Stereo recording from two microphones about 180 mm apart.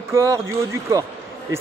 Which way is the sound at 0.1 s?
15° right (ahead or behind).